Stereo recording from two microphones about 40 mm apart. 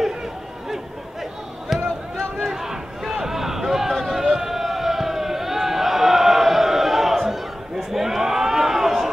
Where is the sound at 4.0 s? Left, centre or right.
Centre.